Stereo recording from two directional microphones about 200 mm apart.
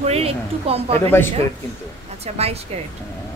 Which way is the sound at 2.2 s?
30° right (ahead or behind).